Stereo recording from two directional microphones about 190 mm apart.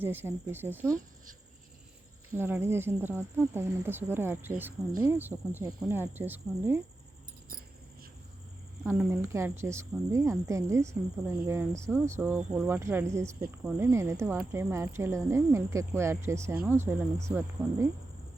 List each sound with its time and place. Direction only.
0.0 s speech: 10° right (ahead or behind)
2.4 s speech: 10° right (ahead or behind)
8.8 s speech: 10° right (ahead or behind)